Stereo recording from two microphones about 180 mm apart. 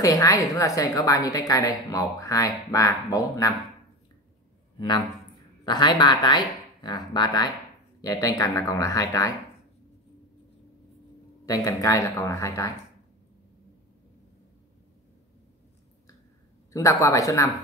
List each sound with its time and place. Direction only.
0.0 s a woman's voice: 20° left (ahead or behind)
4.7 s a man's voice: 25° left (ahead or behind)
11.4 s speech: 20° left (ahead or behind)
16.7 s speech: 20° left (ahead or behind)